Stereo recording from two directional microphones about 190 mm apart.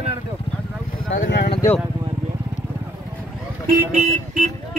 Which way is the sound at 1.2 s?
65° left (ahead or behind).